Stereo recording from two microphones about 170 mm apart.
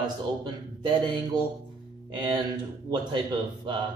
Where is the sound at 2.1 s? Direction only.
25° right (ahead or behind).